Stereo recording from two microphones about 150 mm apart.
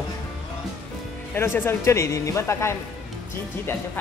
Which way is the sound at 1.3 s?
15° left (ahead or behind).